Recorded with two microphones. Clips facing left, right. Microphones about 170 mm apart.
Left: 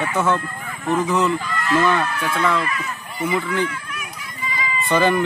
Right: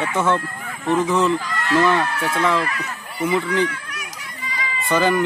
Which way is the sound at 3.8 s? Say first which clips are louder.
Left 2 dB; 75° right (ahead or behind).